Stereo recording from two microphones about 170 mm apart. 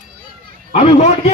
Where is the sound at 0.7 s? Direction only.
40° left (ahead or behind).